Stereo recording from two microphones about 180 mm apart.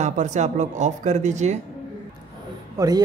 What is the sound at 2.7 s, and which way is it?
Speech, 20° right (ahead or behind).